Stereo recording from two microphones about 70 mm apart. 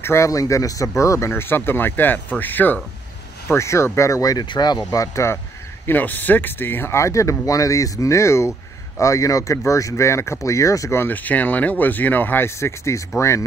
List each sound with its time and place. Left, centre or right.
0.0 s speech: left
1.3 s speech: left
3.4 s speech: left
4.9 s speech: left
5.9 s speech: left
11.0 s speech: left